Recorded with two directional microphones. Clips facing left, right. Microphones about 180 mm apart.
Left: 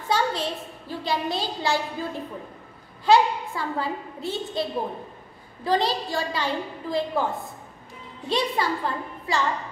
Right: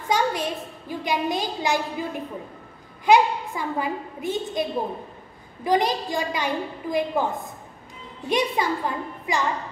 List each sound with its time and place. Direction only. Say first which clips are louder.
0.1 s a woman's voice: right 1 dB; 15° right (ahead or behind)
8.3 s a woman's voice: right 2 dB; 15° right (ahead or behind)